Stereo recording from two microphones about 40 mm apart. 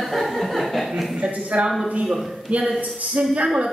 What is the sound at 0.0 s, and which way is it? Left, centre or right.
Chuckle, centre.